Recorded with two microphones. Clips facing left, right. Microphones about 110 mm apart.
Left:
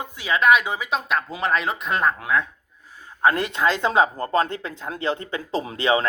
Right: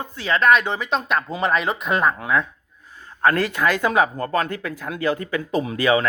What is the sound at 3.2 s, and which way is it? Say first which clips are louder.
Speech: right 1 dB; 20° left (ahead or behind).